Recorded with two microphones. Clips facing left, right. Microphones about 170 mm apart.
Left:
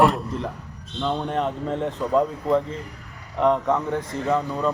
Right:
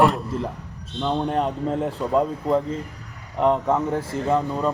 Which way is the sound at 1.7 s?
5° right (ahead or behind).